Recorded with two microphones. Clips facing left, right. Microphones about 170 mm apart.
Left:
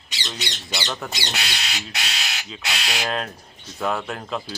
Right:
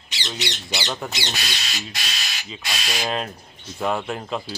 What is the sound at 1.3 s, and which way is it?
Speech, 65° left (ahead or behind).